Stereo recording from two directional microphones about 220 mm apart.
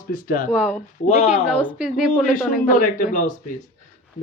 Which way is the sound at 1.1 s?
30° left (ahead or behind).